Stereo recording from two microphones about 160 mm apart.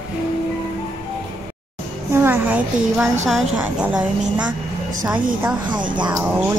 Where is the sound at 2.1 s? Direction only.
15° right (ahead or behind).